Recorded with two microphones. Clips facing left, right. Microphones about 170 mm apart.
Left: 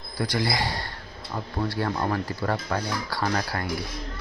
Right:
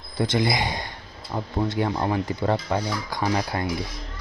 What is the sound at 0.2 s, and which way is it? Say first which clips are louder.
Speech: right 3 dB; 20° right (ahead or behind).